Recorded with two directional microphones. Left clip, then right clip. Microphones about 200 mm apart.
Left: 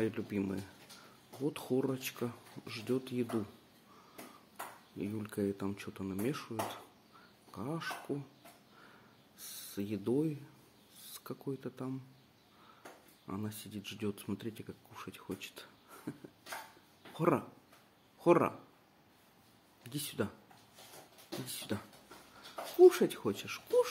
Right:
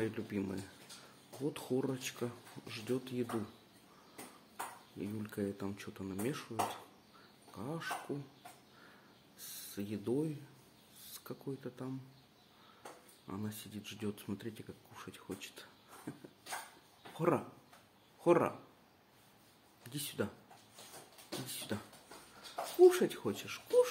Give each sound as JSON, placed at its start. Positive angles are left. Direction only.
{"t": 0.0, "sound": "speech", "side_deg": 15}
{"t": 4.9, "sound": "speech", "side_deg": 20}
{"t": 9.4, "sound": "speech", "side_deg": 20}
{"t": 13.3, "sound": "speech", "side_deg": 15}
{"t": 19.8, "sound": "speech", "side_deg": 15}
{"t": 21.5, "sound": "speech", "side_deg": 15}
{"t": 22.8, "sound": "speech", "side_deg": 15}